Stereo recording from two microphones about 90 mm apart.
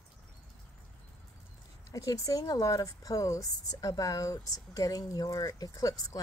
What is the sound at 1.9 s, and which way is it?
Speech, 40° left (ahead or behind).